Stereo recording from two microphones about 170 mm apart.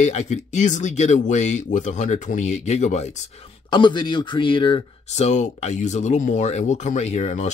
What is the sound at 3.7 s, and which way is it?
Speech, 25° left (ahead or behind).